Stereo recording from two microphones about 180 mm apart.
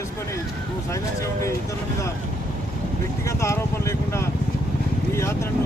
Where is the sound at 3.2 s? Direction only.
15° left (ahead or behind).